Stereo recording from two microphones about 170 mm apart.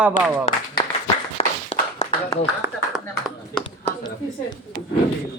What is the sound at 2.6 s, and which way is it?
Speech, 15° right (ahead or behind).